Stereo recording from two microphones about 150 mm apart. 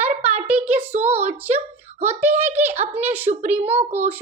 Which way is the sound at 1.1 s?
45° right (ahead or behind).